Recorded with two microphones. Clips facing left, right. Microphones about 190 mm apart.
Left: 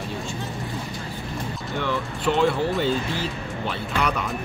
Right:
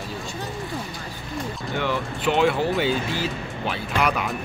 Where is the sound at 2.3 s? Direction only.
Centre (ahead or behind).